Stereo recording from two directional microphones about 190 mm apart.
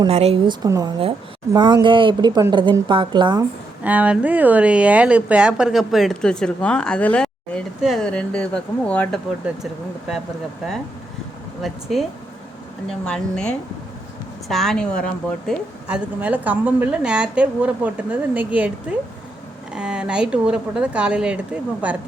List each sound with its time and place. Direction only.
0.1 s speech: 35° right (ahead or behind)
0.6 s speech: 20° right (ahead or behind)
3.8 s speech: 5° right (ahead or behind)
11.6 s speech: centre (ahead or behind)
13.1 s speech: 5° left (ahead or behind)
15.9 s a woman's voice: 10° right (ahead or behind)